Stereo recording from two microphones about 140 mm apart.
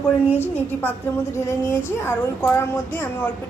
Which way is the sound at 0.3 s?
15° left (ahead or behind).